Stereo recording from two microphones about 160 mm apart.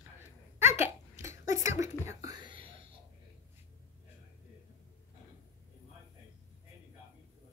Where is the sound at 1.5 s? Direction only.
50° left (ahead or behind).